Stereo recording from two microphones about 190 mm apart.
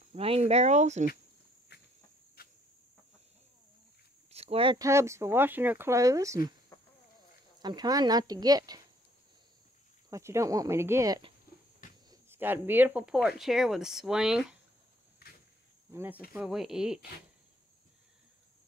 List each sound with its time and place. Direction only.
0.1 s speech: 30° right (ahead or behind)
1.7 s insect: 60° left (ahead or behind)
2.4 s cricket: 55° left (ahead or behind)
4.3 s speech: 30° right (ahead or behind)
4.8 s speech: 15° right (ahead or behind)
6.7 s a sound: 15° left (ahead or behind)
7.6 s speech: 20° right (ahead or behind)
10.0 s speech: 15° right (ahead or behind)
12.1 s speech: 10° right (ahead or behind)
15.9 s speech: 10° right (ahead or behind)